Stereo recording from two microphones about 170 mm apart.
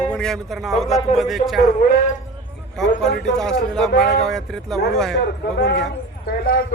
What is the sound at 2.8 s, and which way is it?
Speech, centre (ahead or behind).